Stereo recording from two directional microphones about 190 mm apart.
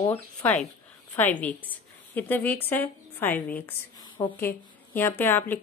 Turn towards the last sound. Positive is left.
turn(degrees=10)  # may be behind; listen again after turning